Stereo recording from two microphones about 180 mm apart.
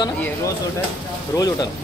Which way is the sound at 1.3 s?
20° left (ahead or behind).